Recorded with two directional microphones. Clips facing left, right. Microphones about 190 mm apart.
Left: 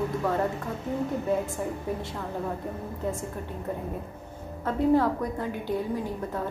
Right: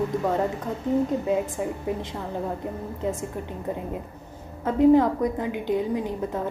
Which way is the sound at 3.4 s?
20° right (ahead or behind).